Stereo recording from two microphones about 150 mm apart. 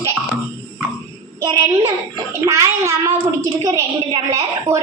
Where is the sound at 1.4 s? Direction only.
20° right (ahead or behind).